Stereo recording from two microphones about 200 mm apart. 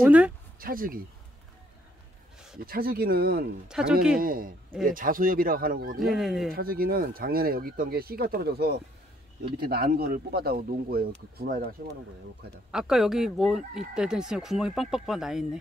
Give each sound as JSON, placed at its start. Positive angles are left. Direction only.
{"t": 0.0, "sound": "speech", "side_deg": -5}
{"t": 0.6, "sound": "a sound", "side_deg": -45}
{"t": 2.6, "sound": "speech", "side_deg": -45}
{"t": 3.6, "sound": "speech", "side_deg": -5}
{"t": 4.2, "sound": "speech", "side_deg": -45}
{"t": 6.0, "sound": "speech", "side_deg": 0}
{"t": 6.5, "sound": "speech", "side_deg": -45}
{"t": 12.7, "sound": "speech", "side_deg": 0}